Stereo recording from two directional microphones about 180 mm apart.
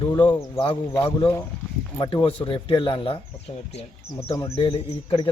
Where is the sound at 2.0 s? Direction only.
25° left (ahead or behind).